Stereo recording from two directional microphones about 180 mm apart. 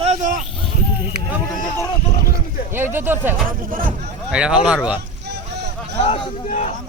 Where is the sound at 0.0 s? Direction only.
40° right (ahead or behind).